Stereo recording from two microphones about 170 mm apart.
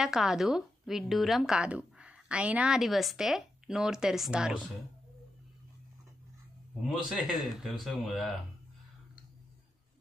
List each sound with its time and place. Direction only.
0.0 s a woman's voice: 5° right (ahead or behind)
6.9 s a woman's voice: centre (ahead or behind)